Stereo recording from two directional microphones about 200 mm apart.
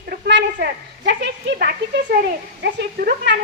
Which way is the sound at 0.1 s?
55° right (ahead or behind).